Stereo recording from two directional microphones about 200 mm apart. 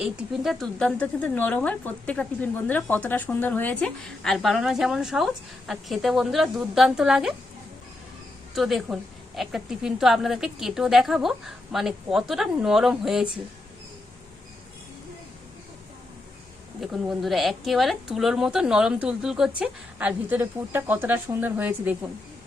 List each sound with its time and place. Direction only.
0.0 s speech: 5° right (ahead or behind)
8.5 s speech: centre (ahead or behind)
16.8 s speech: centre (ahead or behind)